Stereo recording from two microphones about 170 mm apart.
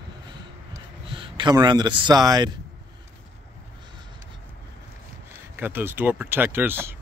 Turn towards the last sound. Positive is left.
turn(degrees=-15)  # may be behind; listen again after turning